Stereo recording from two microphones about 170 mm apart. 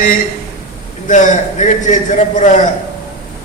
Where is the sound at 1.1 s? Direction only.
45° left (ahead or behind).